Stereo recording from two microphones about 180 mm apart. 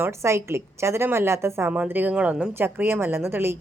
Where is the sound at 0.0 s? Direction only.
15° right (ahead or behind).